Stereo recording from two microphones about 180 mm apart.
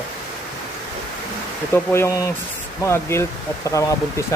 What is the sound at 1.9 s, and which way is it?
Speech, 15° left (ahead or behind).